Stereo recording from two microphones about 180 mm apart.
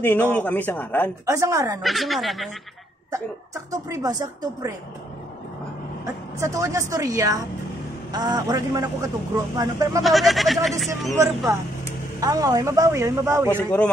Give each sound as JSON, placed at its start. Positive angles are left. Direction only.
{"t": 0.0, "sound": "speech", "side_deg": 10}
{"t": 1.2, "sound": "speech", "side_deg": -15}
{"t": 1.8, "sound": "speech", "side_deg": 0}
{"t": 3.7, "sound": "a man's voice", "side_deg": -20}
{"t": 6.4, "sound": "a man's voice", "side_deg": -15}
{"t": 10.0, "sound": "speech", "side_deg": 0}
{"t": 11.2, "sound": "a man's voice", "side_deg": -15}
{"t": 13.5, "sound": "speech", "side_deg": 10}